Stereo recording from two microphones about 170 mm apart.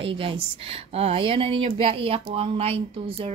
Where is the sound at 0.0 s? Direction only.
30° right (ahead or behind).